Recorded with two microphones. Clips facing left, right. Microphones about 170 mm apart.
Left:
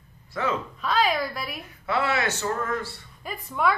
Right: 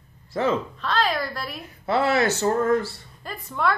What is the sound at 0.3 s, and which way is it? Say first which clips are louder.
Speech: right 5 dB; 35° right (ahead or behind).